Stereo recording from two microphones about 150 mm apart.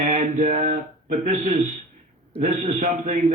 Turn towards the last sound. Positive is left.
turn(degrees=-55)  # may be behind; listen again after turning